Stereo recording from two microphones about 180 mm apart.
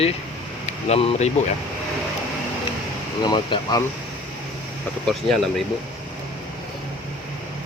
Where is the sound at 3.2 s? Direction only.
25° left (ahead or behind).